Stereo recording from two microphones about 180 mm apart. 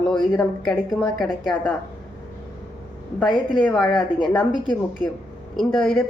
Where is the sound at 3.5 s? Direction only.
5° left (ahead or behind).